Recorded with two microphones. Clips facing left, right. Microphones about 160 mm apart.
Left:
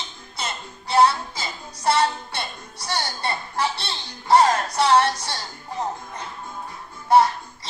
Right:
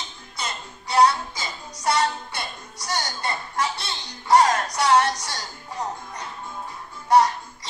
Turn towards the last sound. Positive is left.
turn(degrees=25)  # may be behind; listen again after turning